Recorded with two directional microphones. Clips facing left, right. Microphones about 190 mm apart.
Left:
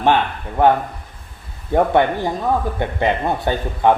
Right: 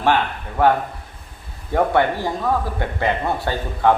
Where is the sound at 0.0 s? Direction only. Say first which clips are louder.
Left 2 dB; 20° left (ahead or behind).